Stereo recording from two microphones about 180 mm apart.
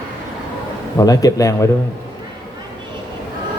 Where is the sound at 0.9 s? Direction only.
20° left (ahead or behind).